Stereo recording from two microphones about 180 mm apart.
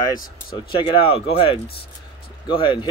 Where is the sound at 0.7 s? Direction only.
30° left (ahead or behind).